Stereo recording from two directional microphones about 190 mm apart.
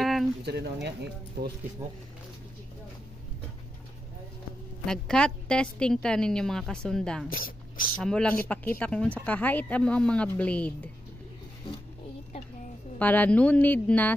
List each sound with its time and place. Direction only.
0.0 s a sound: centre (ahead or behind)
0.8 s speech: 60° right (ahead or behind)
4.8 s a woman's voice: 5° left (ahead or behind)
7.2 s speech: 50° left (ahead or behind)
8.0 s speech: 5° left (ahead or behind)
13.0 s speech: 10° left (ahead or behind)